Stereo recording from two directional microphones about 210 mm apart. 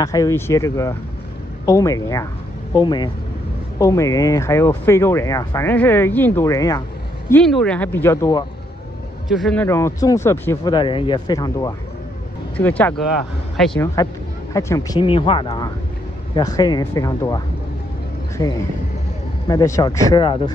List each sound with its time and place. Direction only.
0.0 s speech: 15° left (ahead or behind)
7.2 s speech: 5° left (ahead or behind)
9.3 s speech: centre (ahead or behind)
14.0 s speech: 15° left (ahead or behind)
18.4 s speech: 20° left (ahead or behind)